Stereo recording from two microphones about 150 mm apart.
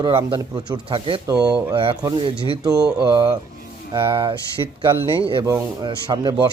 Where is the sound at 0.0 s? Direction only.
35° right (ahead or behind).